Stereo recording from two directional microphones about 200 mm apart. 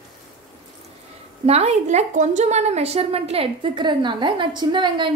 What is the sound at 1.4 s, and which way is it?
A woman's voice, 30° right (ahead or behind).